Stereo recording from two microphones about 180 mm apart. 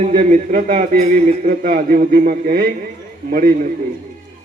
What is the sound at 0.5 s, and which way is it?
A man's voice, 50° right (ahead or behind).